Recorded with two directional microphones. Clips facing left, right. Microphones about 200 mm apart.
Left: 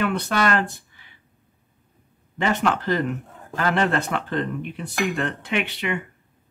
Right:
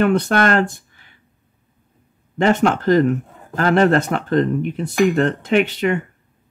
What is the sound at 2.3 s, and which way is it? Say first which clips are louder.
Speech: right 6 dB; 45° right (ahead or behind).